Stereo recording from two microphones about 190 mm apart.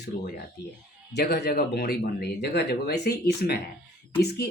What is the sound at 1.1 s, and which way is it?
Speech, 60° left (ahead or behind).